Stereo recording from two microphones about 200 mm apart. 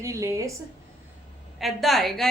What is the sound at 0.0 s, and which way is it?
Speech, 15° right (ahead or behind).